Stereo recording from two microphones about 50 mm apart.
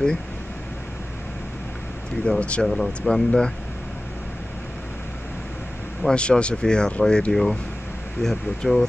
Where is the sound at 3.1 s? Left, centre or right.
Centre.